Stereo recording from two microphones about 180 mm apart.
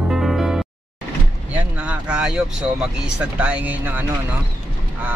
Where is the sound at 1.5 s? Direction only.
5° right (ahead or behind).